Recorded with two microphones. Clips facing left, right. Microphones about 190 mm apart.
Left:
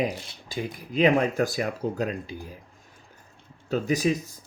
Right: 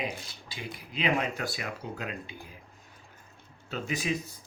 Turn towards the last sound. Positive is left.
turn(degrees=40)  # may be behind; listen again after turning